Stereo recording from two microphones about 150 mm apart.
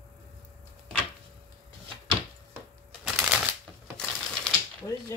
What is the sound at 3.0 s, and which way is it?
Shuffling cards, 5° right (ahead or behind).